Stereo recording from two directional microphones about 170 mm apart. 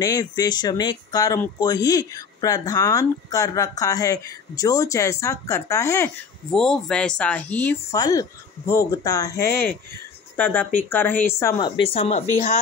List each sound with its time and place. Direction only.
0.0 s speech: 20° left (ahead or behind)
6.5 s speech: 5° left (ahead or behind)
11.8 s speech: 35° left (ahead or behind)